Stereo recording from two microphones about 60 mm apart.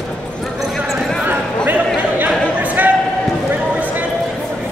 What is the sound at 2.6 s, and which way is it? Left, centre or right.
Basketball bounce, right.